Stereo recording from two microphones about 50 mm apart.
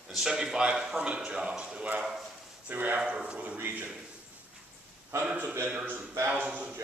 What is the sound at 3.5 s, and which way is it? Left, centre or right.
Speech, right.